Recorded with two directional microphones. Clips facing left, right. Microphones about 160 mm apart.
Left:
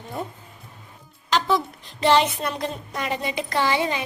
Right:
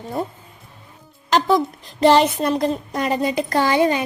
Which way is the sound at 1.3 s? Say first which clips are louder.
Right 5 dB; 40° right (ahead or behind).